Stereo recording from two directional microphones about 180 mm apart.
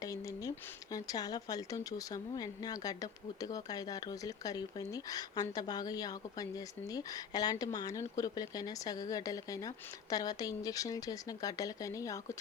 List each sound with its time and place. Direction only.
0.0 s speech: 20° left (ahead or behind)